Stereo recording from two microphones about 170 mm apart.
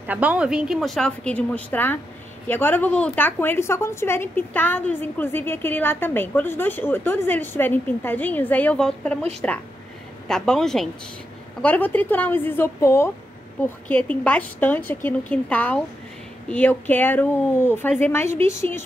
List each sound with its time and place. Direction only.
0.0 s a woman's voice: 10° right (ahead or behind); by 18.8 s 15° left (ahead or behind)